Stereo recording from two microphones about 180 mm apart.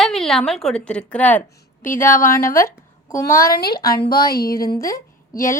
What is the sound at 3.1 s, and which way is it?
Speech, 15° left (ahead or behind).